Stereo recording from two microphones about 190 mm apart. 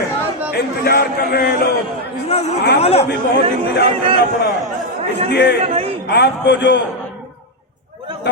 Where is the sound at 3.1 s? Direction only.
65° left (ahead or behind).